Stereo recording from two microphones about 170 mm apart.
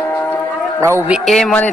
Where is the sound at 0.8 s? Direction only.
15° right (ahead or behind).